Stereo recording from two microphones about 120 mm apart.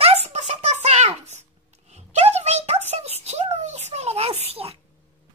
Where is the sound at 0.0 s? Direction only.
60° right (ahead or behind).